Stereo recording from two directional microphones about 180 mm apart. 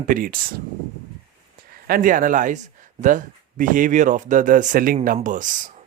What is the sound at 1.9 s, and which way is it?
Speech, 50° right (ahead or behind).